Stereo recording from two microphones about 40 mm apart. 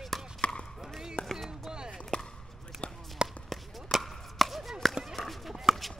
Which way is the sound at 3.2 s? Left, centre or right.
Right.